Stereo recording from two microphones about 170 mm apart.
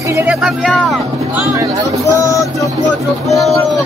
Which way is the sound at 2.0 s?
20° left (ahead or behind).